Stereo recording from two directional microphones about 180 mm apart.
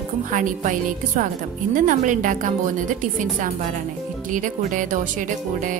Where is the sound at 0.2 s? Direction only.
45° right (ahead or behind).